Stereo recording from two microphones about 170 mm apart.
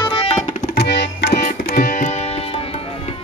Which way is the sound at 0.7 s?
85° left.